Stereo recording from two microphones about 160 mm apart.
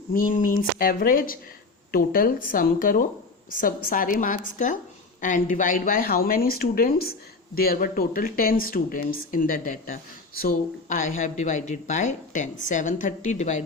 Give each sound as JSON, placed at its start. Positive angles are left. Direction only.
{"t": 0.1, "sound": "speech", "side_deg": 60}